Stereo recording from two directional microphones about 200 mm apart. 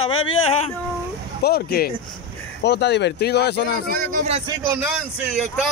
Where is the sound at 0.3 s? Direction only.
30° left (ahead or behind).